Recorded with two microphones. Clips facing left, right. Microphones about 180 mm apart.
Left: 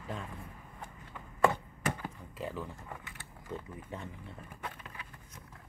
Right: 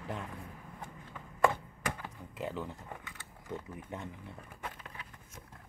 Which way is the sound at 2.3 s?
20° right (ahead or behind).